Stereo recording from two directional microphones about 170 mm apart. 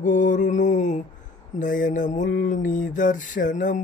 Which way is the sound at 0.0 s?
50° left (ahead or behind).